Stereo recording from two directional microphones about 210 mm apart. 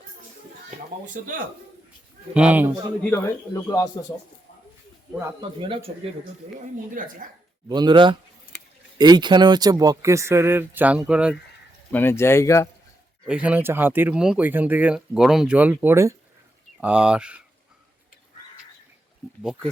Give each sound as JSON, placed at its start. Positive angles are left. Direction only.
{"t": 2.3, "sound": "speech", "side_deg": -5}
{"t": 3.1, "sound": "speech", "side_deg": 15}
{"t": 7.0, "sound": "speech", "side_deg": -40}
{"t": 7.7, "sound": "speech", "side_deg": -20}
{"t": 11.9, "sound": "speech", "side_deg": 10}
{"t": 13.2, "sound": "speech", "side_deg": -5}
{"t": 19.4, "sound": "speech", "side_deg": -5}